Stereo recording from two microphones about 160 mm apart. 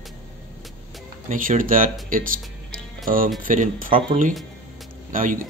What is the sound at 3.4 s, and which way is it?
Speech, 60° right (ahead or behind).